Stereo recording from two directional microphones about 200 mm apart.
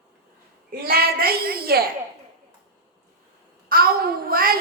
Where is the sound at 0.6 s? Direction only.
50° right (ahead or behind).